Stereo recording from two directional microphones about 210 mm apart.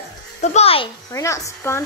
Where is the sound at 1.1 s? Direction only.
15° left (ahead or behind).